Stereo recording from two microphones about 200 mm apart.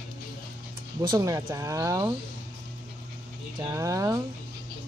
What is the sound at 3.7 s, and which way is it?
Speech, 15° right (ahead or behind).